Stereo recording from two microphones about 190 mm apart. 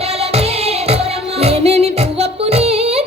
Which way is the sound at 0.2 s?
30° right (ahead or behind).